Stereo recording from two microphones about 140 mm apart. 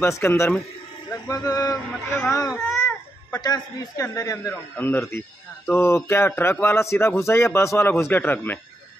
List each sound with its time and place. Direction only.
0.0 s a man's voice: 15° left (ahead or behind)